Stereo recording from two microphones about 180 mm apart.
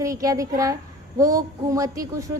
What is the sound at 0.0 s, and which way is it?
A woman's voice, 20° right (ahead or behind).